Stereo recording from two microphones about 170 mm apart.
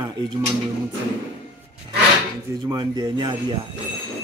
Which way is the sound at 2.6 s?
20° right (ahead or behind).